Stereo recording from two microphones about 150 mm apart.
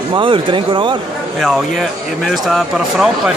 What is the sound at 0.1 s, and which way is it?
Speech, 35° right (ahead or behind).